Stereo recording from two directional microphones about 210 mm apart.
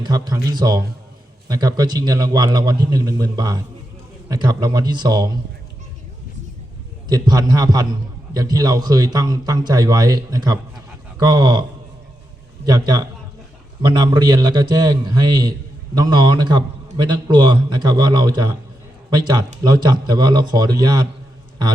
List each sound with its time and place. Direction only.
0.0 s a man's voice: 20° right (ahead or behind)
7.1 s a man's voice: 20° right (ahead or behind)
12.6 s a man's voice: 20° right (ahead or behind)